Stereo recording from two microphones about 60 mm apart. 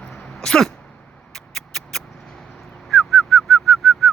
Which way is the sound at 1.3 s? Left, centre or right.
Centre.